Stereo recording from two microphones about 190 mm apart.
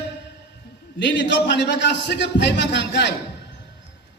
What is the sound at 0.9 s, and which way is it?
A man's voice, 70° left (ahead or behind).